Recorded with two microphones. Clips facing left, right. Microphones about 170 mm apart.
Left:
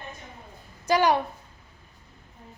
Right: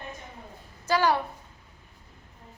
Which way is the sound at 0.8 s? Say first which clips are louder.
Left 2 dB; 20° left (ahead or behind).